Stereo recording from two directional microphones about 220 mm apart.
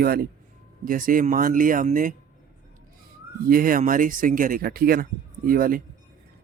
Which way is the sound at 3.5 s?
40° right (ahead or behind).